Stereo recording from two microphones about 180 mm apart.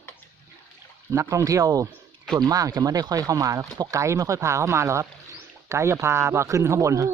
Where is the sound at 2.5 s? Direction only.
20° right (ahead or behind).